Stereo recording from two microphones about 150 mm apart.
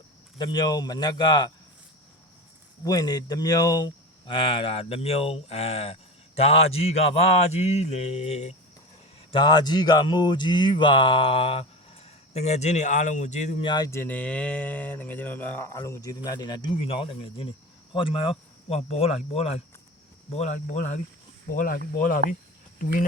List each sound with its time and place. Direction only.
0.3 s speech: 30° left (ahead or behind)
2.8 s speech: 25° left (ahead or behind); by 8.5 s 45° left (ahead or behind)
9.3 s speech: 30° left (ahead or behind); by 13.6 s 50° left (ahead or behind)
13.6 s speech: 30° left (ahead or behind); by 22.2 s 65° left (ahead or behind)